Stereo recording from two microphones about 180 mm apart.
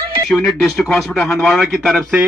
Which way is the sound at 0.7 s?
Centre (ahead or behind).